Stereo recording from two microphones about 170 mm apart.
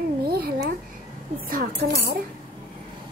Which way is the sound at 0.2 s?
65° right (ahead or behind).